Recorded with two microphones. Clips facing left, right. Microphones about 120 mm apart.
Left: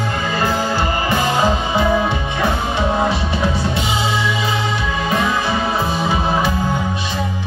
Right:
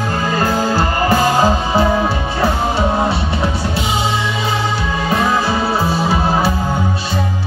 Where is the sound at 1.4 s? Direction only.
35° right (ahead or behind).